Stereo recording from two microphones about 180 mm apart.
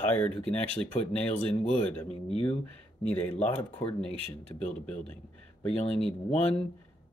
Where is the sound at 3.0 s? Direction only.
10° left (ahead or behind).